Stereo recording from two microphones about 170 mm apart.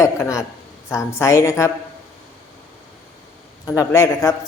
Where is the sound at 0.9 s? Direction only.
15° left (ahead or behind).